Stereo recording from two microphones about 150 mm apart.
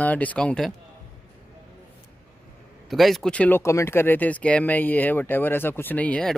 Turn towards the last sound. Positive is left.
turn(degrees=5)  # may be behind; listen again after turning